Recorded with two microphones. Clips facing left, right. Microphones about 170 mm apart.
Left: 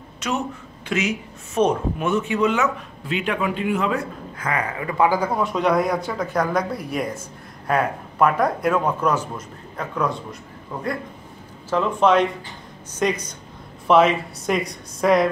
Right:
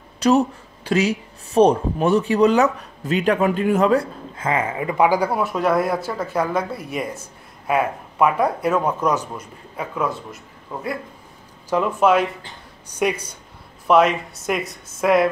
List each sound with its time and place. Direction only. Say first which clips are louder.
0.2 s speech: right 9 dB; 35° right (ahead or behind); by 15.2 s centre (ahead or behind)